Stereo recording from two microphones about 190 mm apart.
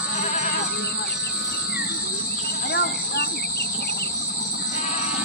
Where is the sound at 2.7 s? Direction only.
60° left (ahead or behind).